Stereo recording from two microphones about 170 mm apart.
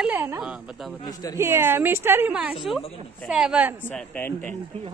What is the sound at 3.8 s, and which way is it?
Speech, 10° left (ahead or behind).